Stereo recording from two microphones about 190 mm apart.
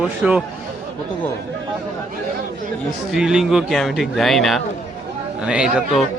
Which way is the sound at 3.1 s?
5° right (ahead or behind).